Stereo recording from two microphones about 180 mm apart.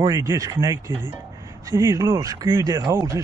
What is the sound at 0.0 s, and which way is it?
Speech, 20° right (ahead or behind).